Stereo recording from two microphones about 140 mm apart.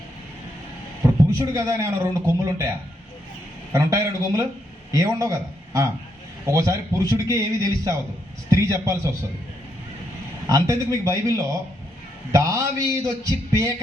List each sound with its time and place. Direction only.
1.4 s a man's voice: 20° right (ahead or behind)
10.4 s a man's voice: 25° right (ahead or behind)